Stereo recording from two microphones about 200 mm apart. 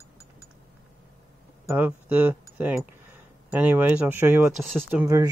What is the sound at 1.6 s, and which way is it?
Speech, 10° right (ahead or behind).